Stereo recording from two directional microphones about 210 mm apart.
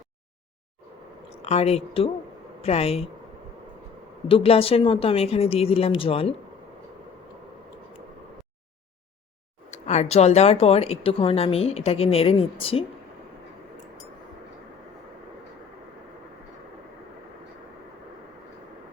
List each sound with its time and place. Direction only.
1.3 s a woman's voice: 30° left (ahead or behind)
4.3 s speech: 25° left (ahead or behind)
9.6 s speech: 35° left (ahead or behind)